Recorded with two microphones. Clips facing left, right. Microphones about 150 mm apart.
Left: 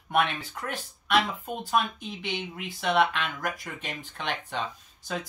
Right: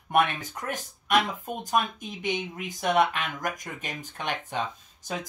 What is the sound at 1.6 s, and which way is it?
Speech, 45° right (ahead or behind).